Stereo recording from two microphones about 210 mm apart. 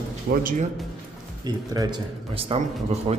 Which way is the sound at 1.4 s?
20° right (ahead or behind).